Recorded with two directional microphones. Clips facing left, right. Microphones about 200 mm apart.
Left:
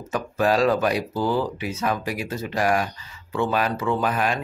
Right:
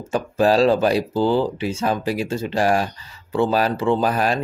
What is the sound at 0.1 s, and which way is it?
Speech, 30° right (ahead or behind).